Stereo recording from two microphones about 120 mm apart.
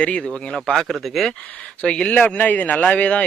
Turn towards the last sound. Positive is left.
turn(degrees=10)  # may be behind; listen again after turning